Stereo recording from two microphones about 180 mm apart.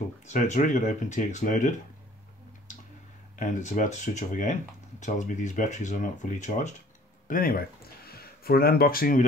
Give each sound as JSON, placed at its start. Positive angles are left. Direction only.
{"t": 0.2, "sound": "speech", "side_deg": 40}
{"t": 3.3, "sound": "speech", "side_deg": 45}